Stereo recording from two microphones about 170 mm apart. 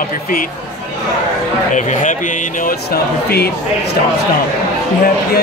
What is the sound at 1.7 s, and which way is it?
Speech, 45° left (ahead or behind).